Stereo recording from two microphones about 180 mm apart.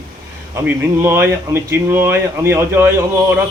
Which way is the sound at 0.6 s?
15° right (ahead or behind).